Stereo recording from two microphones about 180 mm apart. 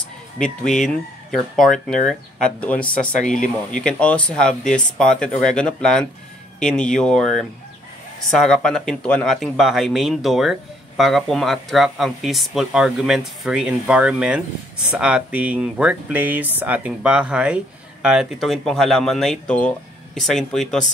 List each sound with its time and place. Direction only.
0.4 s speech: centre (ahead or behind)